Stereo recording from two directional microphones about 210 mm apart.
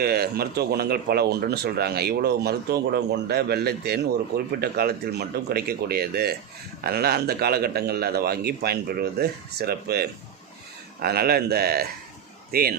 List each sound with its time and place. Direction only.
0.0 s speech: 50° right (ahead or behind)